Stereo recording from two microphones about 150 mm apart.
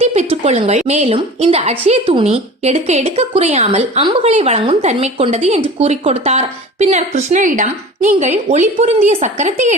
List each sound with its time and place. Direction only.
0.0 s a woman's voice: 45° right (ahead or behind)